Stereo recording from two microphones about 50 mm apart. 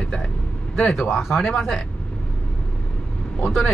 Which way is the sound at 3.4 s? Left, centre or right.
Centre.